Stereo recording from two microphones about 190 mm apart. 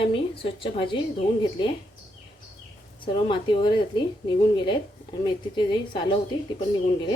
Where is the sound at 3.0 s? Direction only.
25° left (ahead or behind).